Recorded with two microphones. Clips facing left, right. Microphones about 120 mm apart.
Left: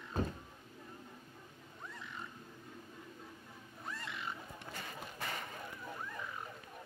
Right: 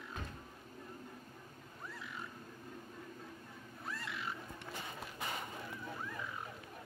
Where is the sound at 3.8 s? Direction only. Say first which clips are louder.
Even; centre (ahead or behind).